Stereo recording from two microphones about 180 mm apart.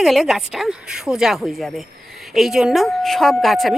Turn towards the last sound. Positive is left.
turn(degrees=0)  # may be behind; listen again after turning